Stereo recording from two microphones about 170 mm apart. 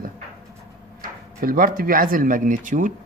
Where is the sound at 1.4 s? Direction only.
60° right (ahead or behind).